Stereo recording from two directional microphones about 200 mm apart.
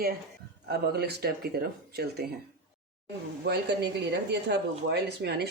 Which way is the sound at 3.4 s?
55° right (ahead or behind).